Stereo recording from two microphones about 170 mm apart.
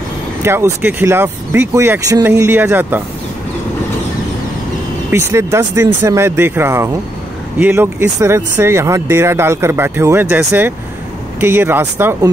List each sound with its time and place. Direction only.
0.4 s speech: 15° right (ahead or behind)
5.1 s speech: 15° right (ahead or behind)